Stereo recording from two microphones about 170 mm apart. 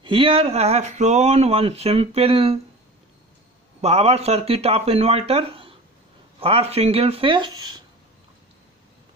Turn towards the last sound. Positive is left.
turn(degrees=-25)  # may be behind; listen again after turning